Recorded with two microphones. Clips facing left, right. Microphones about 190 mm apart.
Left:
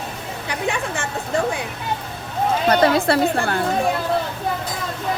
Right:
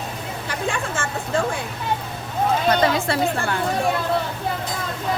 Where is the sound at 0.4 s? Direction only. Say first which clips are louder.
Left 2 dB; 15° left (ahead or behind).